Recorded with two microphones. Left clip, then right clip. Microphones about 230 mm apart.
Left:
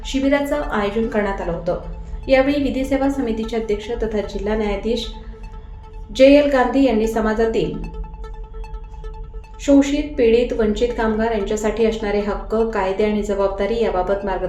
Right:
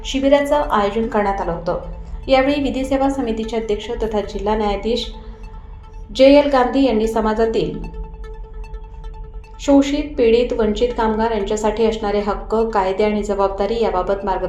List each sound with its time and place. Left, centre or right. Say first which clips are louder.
0.0 s a woman's voice: right 4 dB; centre
6.1 s a woman's voice: right 1 dB; centre
9.6 s a woman's voice: right 1 dB; centre